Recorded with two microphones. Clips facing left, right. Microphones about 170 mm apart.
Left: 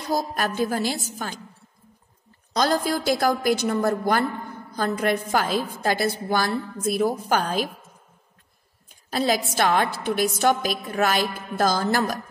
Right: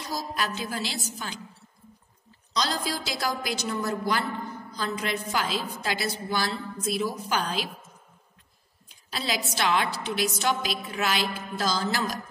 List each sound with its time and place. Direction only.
0.0 s a woman's voice: 50° left (ahead or behind)
2.5 s a woman's voice: 50° left (ahead or behind)
9.1 s a woman's voice: 50° left (ahead or behind)